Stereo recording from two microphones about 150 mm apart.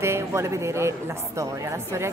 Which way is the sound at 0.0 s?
20° right (ahead or behind).